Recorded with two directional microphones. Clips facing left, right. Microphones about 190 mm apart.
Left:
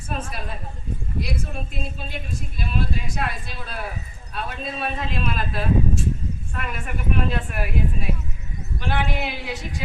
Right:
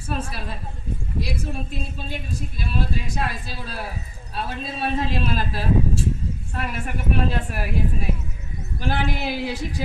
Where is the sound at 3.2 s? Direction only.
35° right (ahead or behind).